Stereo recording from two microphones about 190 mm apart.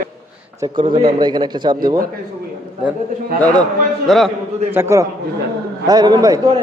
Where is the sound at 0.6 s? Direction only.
25° right (ahead or behind).